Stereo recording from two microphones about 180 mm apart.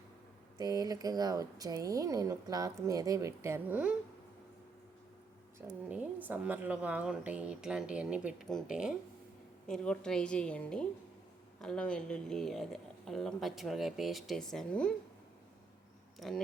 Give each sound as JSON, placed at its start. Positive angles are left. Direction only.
{"t": 0.6, "sound": "speech", "side_deg": -20}
{"t": 5.5, "sound": "a woman's voice", "side_deg": -10}
{"t": 16.2, "sound": "speech", "side_deg": 0}